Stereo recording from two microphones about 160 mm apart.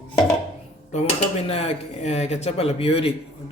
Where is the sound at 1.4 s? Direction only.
40° left (ahead or behind).